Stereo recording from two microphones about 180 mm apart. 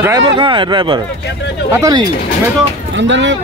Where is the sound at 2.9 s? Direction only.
90° right.